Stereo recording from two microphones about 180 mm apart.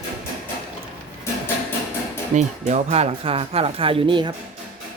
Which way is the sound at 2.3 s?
40° right (ahead or behind).